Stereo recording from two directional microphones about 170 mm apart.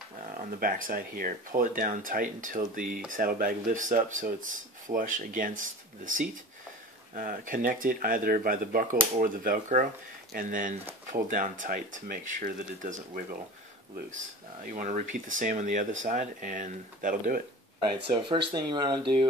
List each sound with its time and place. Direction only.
0.6 s speech: 55° right (ahead or behind)
18.1 s speech: 30° right (ahead or behind)